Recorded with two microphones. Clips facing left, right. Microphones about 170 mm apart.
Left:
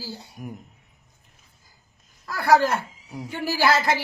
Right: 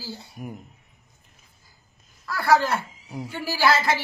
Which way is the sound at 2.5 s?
45° left (ahead or behind).